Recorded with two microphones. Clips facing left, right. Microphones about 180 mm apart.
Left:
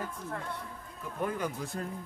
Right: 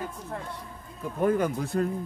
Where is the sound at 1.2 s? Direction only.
55° right (ahead or behind).